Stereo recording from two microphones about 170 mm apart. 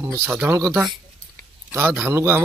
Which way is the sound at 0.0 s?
15° right (ahead or behind).